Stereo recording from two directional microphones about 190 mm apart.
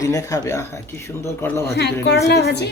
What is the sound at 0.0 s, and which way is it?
Speech, 15° left (ahead or behind).